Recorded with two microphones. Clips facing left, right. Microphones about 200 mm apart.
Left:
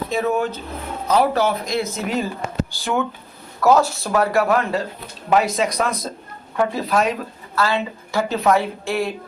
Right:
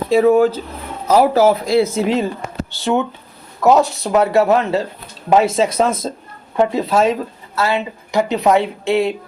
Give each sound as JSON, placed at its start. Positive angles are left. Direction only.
{"t": 0.1, "sound": "speech", "side_deg": -30}